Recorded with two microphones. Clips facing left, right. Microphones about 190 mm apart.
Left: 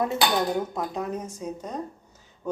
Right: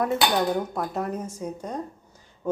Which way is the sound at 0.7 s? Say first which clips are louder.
Right 1 dB; 5° right (ahead or behind).